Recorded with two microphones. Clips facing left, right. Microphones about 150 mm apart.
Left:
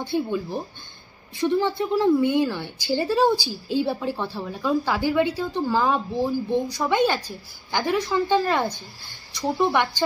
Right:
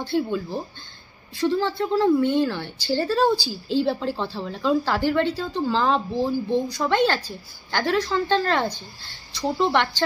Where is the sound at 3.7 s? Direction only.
10° left (ahead or behind).